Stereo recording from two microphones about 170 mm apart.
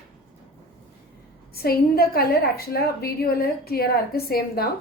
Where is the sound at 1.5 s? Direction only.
65° left (ahead or behind).